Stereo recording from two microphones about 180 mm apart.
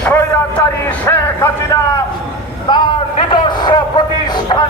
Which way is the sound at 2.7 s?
25° left (ahead or behind).